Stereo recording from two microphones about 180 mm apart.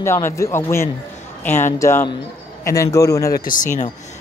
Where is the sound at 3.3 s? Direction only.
50° left (ahead or behind).